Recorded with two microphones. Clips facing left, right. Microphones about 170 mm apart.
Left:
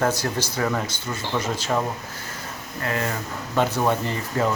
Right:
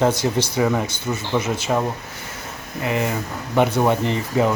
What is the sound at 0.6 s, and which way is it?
Speech, 15° right (ahead or behind).